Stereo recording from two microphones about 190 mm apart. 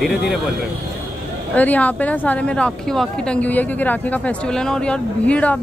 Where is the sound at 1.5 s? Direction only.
10° left (ahead or behind).